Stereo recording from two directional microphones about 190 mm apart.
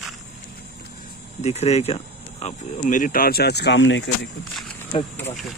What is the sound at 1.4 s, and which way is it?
Speech, 35° left (ahead or behind).